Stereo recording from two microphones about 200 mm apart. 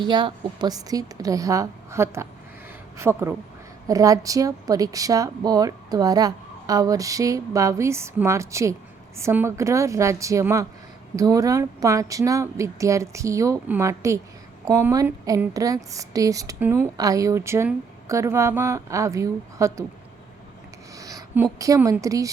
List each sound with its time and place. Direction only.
0.0 s a woman's voice: 25° right (ahead or behind)
20.9 s speech: 15° right (ahead or behind)